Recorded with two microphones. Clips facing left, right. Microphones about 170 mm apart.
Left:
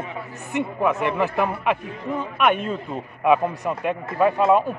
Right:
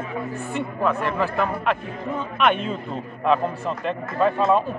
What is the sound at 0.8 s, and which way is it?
Speech, 15° left (ahead or behind).